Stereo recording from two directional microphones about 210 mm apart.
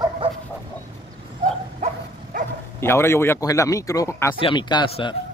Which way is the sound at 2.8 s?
10° left (ahead or behind).